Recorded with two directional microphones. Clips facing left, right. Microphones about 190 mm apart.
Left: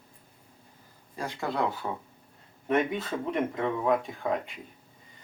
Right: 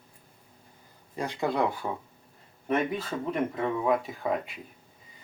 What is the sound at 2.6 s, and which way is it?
Speech, centre (ahead or behind).